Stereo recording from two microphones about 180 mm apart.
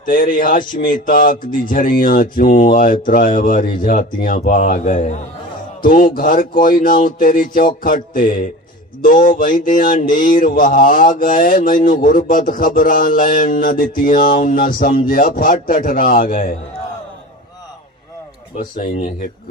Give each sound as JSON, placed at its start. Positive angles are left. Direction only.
{"t": 0.0, "sound": "speech", "side_deg": 50}
{"t": 18.5, "sound": "speech", "side_deg": 50}